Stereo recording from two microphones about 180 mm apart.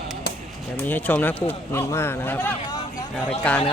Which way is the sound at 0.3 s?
60° left (ahead or behind).